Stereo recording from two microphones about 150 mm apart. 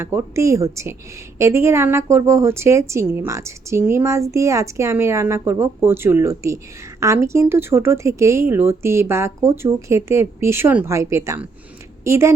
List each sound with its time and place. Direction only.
0.0 s a woman's voice: 15° right (ahead or behind)